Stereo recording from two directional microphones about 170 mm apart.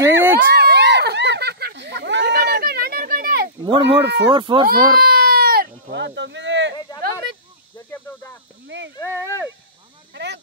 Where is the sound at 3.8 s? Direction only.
90° right.